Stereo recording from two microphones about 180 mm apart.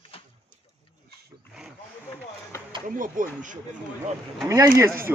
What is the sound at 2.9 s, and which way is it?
Speech, 45° right (ahead or behind).